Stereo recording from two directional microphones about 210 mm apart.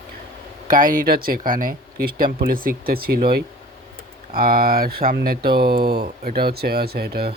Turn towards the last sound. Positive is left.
turn(degrees=-50)  # may be behind; listen again after turning